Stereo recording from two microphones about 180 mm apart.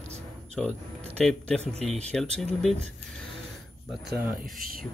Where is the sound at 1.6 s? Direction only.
35° right (ahead or behind).